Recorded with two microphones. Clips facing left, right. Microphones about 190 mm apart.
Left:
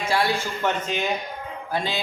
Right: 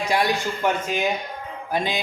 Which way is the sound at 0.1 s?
15° right (ahead or behind).